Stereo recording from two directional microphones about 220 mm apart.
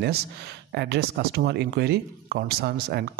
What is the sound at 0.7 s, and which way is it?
Speech, 50° right (ahead or behind).